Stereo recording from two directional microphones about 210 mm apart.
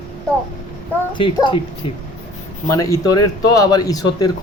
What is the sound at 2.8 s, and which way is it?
Speech, 15° left (ahead or behind).